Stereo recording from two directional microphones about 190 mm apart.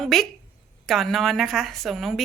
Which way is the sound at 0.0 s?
Centre (ahead or behind).